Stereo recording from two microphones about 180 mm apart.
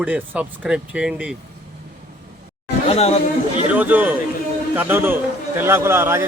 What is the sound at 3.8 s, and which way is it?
Speech, 10° right (ahead or behind).